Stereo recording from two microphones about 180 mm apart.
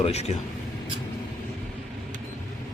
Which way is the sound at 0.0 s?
35° left (ahead or behind).